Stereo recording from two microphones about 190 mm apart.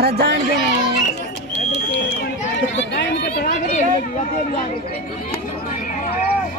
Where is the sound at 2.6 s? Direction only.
65° left (ahead or behind).